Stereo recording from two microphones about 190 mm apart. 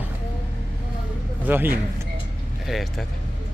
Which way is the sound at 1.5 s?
10° right (ahead or behind).